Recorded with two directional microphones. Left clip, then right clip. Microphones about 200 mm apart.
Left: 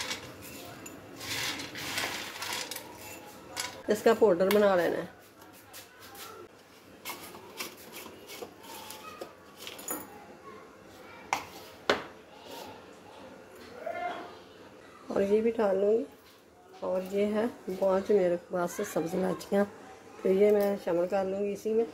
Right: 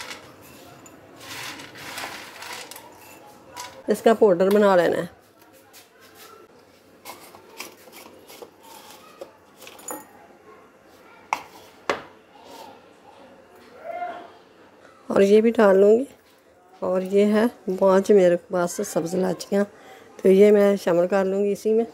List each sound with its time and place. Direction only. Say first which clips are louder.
3.8 s speech: right 7 dB; 40° right (ahead or behind)
15.0 s speech: right 10 dB; 55° right (ahead or behind); by 19.7 s 35° right (ahead or behind)
20.2 s speech: right 9 dB; 55° right (ahead or behind)